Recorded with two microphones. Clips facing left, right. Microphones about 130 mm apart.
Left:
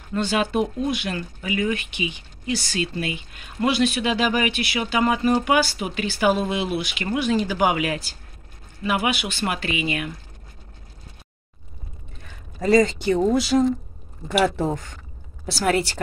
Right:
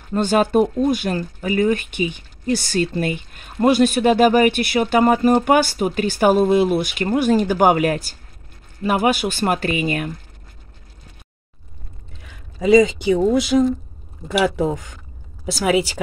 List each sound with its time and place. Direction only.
0.1 s speech: 45° right (ahead or behind)
12.2 s speech: centre (ahead or behind)